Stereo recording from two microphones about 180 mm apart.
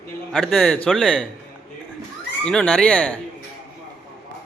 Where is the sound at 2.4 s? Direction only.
5° left (ahead or behind).